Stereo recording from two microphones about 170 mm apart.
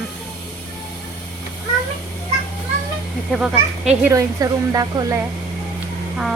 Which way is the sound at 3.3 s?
5° right (ahead or behind).